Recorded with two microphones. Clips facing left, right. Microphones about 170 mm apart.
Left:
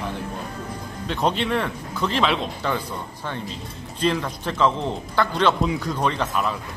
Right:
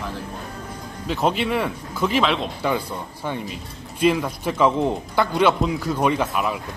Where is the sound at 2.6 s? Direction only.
10° right (ahead or behind).